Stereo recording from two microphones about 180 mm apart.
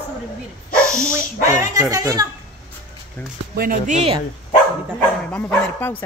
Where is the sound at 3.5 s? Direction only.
50° right (ahead or behind).